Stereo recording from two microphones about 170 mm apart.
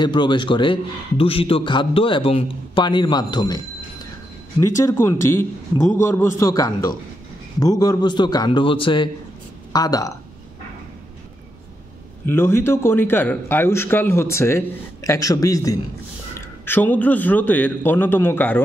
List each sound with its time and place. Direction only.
0.0 s a man's voice: 25° left (ahead or behind)
12.3 s a man's voice: 15° left (ahead or behind)